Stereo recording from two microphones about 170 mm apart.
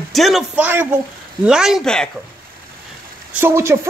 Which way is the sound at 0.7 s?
10° right (ahead or behind).